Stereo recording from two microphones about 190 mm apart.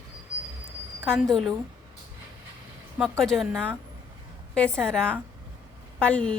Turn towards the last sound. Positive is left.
turn(degrees=5)  # may be behind; listen again after turning